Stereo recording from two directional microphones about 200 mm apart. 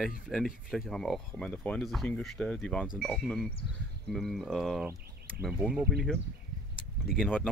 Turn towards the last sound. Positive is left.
turn(degrees=-5)  # may be behind; listen again after turning